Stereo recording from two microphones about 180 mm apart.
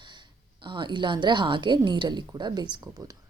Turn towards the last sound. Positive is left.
turn(degrees=-20)  # may be behind; listen again after turning